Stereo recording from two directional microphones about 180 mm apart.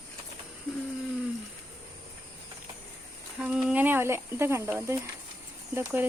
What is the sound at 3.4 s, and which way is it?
Speech, 5° right (ahead or behind).